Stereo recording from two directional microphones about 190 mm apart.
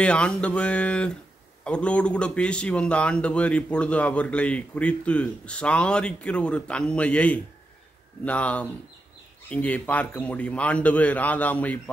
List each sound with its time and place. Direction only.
0.0 s a man's voice: 5° left (ahead or behind)